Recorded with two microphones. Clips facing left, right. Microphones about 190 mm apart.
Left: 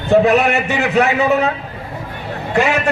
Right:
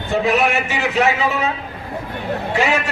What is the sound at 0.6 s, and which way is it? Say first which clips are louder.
Speech: left 3 dB; 60° left (ahead or behind).